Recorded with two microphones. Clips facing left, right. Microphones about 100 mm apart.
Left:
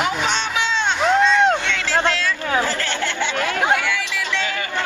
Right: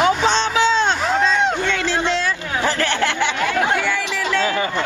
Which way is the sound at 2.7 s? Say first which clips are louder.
Right 4 dB; 60° right (ahead or behind).